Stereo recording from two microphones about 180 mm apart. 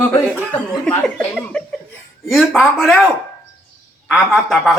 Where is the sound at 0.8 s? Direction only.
5° left (ahead or behind).